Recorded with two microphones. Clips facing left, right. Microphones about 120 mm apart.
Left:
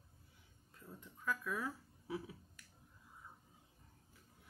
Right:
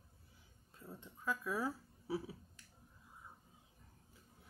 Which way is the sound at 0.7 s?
25° right (ahead or behind).